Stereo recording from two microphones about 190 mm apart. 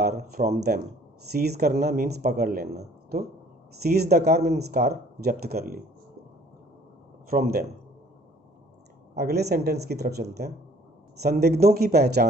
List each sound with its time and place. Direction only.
0.0 s speech: 55° right (ahead or behind)
3.8 s speech: 55° right (ahead or behind)
7.2 s speech: 50° right (ahead or behind)
9.1 s speech: 60° right (ahead or behind)